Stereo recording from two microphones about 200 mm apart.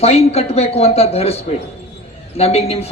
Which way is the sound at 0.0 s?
30° left (ahead or behind).